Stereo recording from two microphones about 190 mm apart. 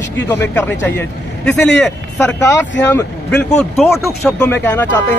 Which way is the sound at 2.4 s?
15° left (ahead or behind).